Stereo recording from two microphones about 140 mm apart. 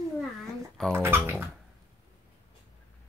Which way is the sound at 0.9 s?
15° right (ahead or behind).